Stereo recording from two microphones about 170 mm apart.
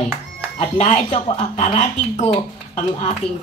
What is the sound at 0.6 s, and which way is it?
Speech, 40° left (ahead or behind).